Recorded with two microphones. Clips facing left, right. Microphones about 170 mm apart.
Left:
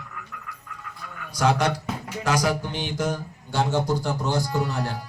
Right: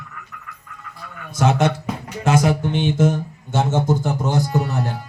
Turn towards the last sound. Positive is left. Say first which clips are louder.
# right 4 dB
turn(degrees=-20)  # may be behind; listen again after turning